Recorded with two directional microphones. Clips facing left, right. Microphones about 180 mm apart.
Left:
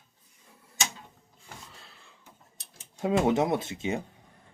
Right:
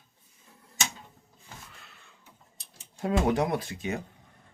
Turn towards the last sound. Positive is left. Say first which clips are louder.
# left 2 dB
turn(degrees=25)  # may be behind; listen again after turning